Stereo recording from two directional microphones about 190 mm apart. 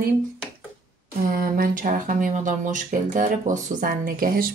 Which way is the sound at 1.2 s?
45° right (ahead or behind).